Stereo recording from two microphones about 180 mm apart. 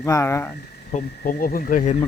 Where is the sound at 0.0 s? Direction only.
15° left (ahead or behind).